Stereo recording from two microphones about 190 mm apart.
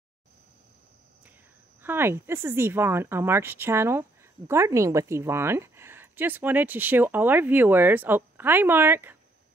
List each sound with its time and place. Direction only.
1.8 s a woman's voice: 10° right (ahead or behind)